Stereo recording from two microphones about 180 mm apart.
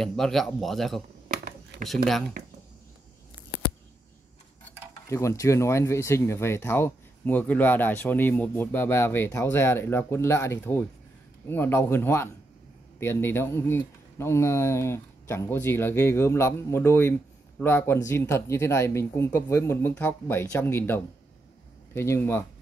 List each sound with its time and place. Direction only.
0.0 s speech: centre (ahead or behind)
1.7 s a sound: 70° right (ahead or behind)
5.0 s speech: 15° left (ahead or behind)